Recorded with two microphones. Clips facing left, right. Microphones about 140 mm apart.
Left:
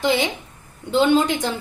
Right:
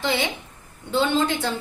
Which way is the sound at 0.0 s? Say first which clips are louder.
Left 4 dB; 15° left (ahead or behind).